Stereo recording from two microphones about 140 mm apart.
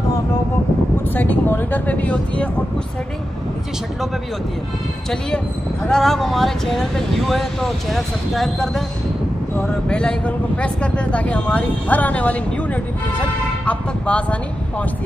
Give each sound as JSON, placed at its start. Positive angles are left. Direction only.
{"t": 1.1, "sound": "speech", "side_deg": 15}
{"t": 5.9, "sound": "speech", "side_deg": 5}